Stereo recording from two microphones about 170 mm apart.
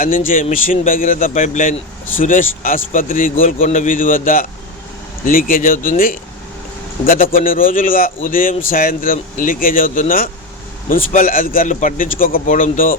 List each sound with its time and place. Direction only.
0.7 s a man's voice: 55° left (ahead or behind)